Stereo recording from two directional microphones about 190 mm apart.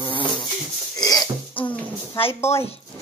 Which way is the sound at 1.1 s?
5° left (ahead or behind).